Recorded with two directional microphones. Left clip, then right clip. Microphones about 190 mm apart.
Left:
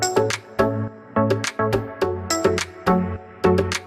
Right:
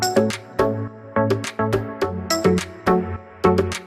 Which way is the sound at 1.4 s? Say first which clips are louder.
Left 1 dB; 5° right (ahead or behind).